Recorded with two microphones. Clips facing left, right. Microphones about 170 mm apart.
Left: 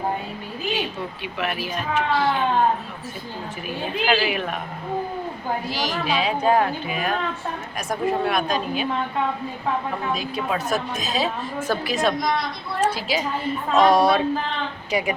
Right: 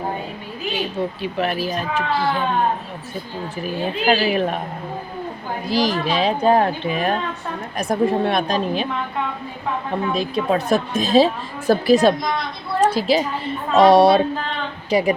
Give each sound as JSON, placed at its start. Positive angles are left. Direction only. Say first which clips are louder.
{"t": 1.2, "sound": "a woman's voice", "louder": "right 3 dB", "side_deg": -35}
{"t": 4.0, "sound": "a woman's voice", "louder": "right 4 dB", "side_deg": -35}
{"t": 5.7, "sound": "a woman's voice", "louder": "right 8 dB", "side_deg": -35}
{"t": 10.2, "sound": "a woman's voice", "louder": "right 6 dB", "side_deg": -35}